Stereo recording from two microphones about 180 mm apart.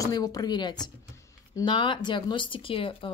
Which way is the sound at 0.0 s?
20° left (ahead or behind).